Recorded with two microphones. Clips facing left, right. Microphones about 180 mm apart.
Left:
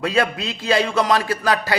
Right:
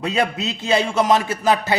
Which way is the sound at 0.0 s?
25° right (ahead or behind).